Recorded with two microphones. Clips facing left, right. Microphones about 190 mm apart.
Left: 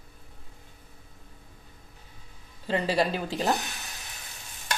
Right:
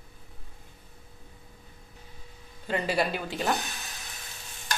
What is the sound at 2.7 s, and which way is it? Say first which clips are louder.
Speech: left 2 dB; 30° left (ahead or behind).